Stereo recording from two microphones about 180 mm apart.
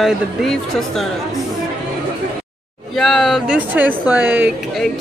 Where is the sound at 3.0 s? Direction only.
Centre (ahead or behind).